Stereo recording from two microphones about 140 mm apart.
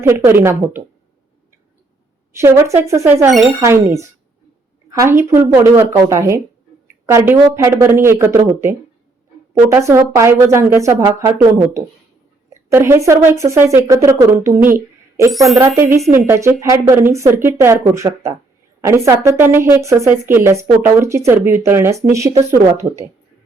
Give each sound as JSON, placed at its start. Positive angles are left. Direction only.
{"t": 0.0, "sound": "speech", "side_deg": -20}
{"t": 2.3, "sound": "speech", "side_deg": -20}
{"t": 15.5, "sound": "speech", "side_deg": -20}